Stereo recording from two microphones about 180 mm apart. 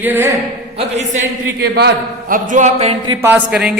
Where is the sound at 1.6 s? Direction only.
65° right (ahead or behind).